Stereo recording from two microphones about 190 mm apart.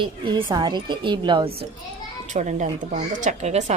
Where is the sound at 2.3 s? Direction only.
40° right (ahead or behind).